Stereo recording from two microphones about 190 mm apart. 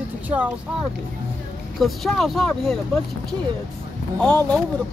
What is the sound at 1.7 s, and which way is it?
Speech, centre (ahead or behind).